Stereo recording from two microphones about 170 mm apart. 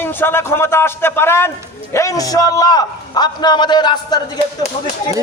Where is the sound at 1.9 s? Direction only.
20° left (ahead or behind).